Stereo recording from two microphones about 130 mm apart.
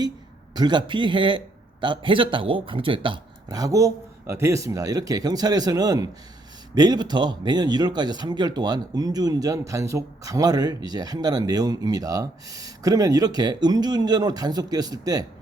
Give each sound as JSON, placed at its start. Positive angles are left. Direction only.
{"t": 0.5, "sound": "speech", "side_deg": -35}